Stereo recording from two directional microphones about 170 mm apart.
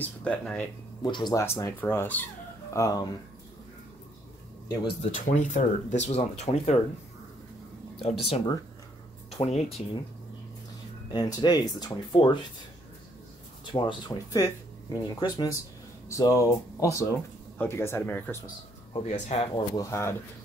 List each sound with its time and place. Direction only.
0.0 s speech: 5° left (ahead or behind)
1.0 s speech: 25° left (ahead or behind)
1.4 s speech: 15° left (ahead or behind)
5.1 s speech: 45° left (ahead or behind)
8.0 s speech: 35° left (ahead or behind)
11.1 s speech: 25° left (ahead or behind)
13.7 s speech: 25° left (ahead or behind); by 18.4 s 10° left (ahead or behind)
18.9 s speech: 40° left (ahead or behind)
19.7 s speech: 20° left (ahead or behind)